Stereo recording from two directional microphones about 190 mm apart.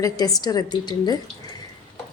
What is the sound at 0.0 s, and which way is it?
Speech, 20° left (ahead or behind).